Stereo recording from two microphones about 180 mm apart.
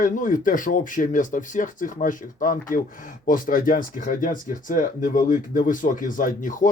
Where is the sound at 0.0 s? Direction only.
50° left (ahead or behind).